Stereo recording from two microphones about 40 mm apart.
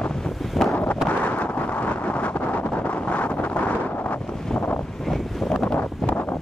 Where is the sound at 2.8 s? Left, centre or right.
Left.